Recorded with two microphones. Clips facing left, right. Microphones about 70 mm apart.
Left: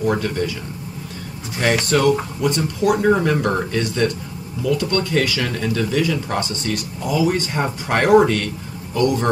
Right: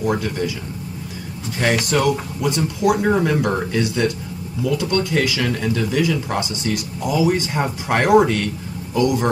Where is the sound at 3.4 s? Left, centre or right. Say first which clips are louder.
Even; centre.